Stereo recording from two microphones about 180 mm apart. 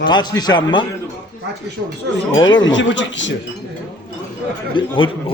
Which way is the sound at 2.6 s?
90° left.